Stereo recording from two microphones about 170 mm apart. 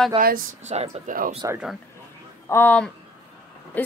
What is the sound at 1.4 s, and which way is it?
Speech, 20° right (ahead or behind).